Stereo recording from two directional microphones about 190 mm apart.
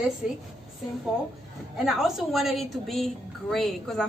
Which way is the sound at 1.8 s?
Centre (ahead or behind).